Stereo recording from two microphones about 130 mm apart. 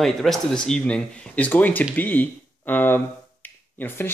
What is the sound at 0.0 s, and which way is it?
Speech, centre (ahead or behind).